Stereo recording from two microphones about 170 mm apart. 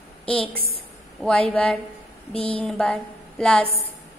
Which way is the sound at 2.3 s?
35° left (ahead or behind).